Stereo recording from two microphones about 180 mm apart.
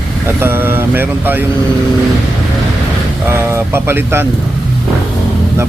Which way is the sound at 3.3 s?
15° right (ahead or behind).